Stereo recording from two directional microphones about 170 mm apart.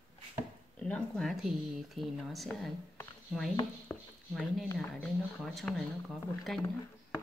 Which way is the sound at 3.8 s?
5° left (ahead or behind).